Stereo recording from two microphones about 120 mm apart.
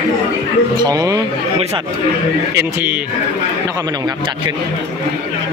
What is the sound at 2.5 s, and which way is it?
Speech, 20° right (ahead or behind).